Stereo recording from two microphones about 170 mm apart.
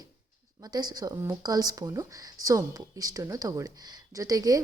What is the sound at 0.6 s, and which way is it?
A woman's voice, 25° right (ahead or behind).